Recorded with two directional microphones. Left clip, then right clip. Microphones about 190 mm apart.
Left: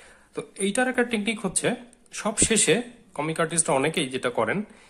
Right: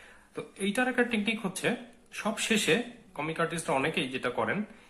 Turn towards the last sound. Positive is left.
turn(degrees=35)  # may be behind; listen again after turning